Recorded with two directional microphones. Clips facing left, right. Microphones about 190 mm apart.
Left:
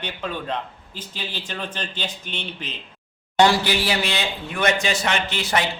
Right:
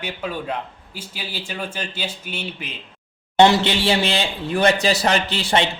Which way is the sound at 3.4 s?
25° right (ahead or behind).